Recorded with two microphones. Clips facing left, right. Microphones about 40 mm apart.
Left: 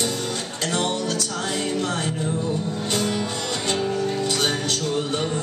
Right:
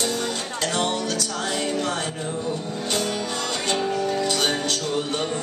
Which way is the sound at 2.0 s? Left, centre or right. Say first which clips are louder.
Left 2 dB; centre.